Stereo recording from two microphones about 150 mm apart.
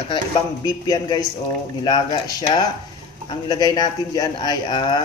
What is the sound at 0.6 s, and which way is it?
A man's voice, 25° left (ahead or behind).